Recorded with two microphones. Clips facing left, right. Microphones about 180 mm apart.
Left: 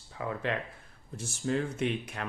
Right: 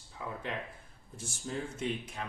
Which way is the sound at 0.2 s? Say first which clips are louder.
Left 6 dB; 75° left (ahead or behind).